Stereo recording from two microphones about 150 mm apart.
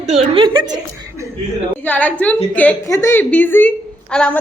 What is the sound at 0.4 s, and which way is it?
Speech, 30° right (ahead or behind).